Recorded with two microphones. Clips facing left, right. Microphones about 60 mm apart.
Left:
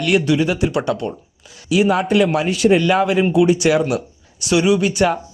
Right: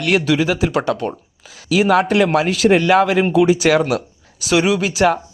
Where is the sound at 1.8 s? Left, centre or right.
Right.